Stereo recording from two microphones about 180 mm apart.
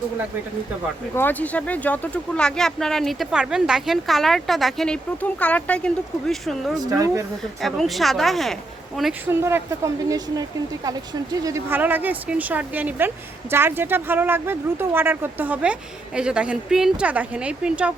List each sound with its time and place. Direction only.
1.1 s speech: 10° left (ahead or behind)
6.7 s speech: 20° right (ahead or behind)
7.6 s speech: centre (ahead or behind)
9.3 s speech: 15° right (ahead or behind)
11.4 s speech: 15° right (ahead or behind)